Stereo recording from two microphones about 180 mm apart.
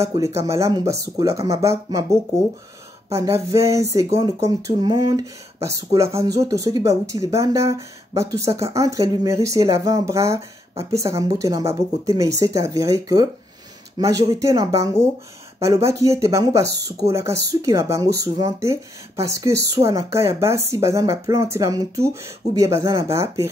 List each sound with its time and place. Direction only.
0.0 s speech: 15° right (ahead or behind)